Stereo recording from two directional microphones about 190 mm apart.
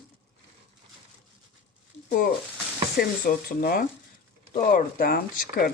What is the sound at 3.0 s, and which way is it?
Speech, 50° left (ahead or behind).